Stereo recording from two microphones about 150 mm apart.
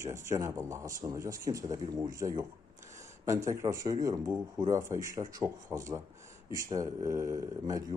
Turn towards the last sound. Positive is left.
turn(degrees=-20)  # may be behind; listen again after turning